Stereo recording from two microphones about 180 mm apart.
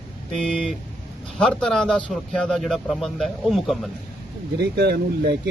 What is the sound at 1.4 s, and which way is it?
A man's voice, 5° left (ahead or behind).